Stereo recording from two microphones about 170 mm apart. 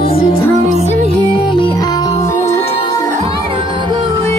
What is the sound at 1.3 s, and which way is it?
Music, 30° left (ahead or behind).